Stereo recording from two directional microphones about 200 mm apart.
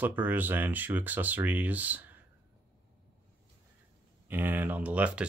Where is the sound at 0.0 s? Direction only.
10° right (ahead or behind).